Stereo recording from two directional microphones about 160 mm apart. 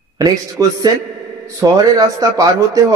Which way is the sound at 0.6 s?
20° right (ahead or behind).